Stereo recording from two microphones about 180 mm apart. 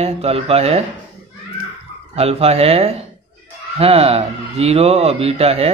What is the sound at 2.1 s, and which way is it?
Speech, 35° right (ahead or behind).